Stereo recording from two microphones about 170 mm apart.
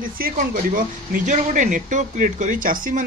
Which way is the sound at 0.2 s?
55° right (ahead or behind).